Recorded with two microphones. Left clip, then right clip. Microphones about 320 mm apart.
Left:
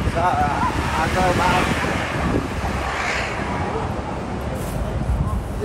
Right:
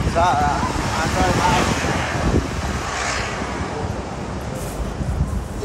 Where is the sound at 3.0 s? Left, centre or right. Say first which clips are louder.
Even; left.